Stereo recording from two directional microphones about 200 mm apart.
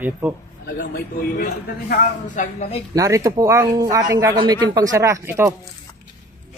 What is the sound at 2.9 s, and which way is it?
Speech, 15° right (ahead or behind).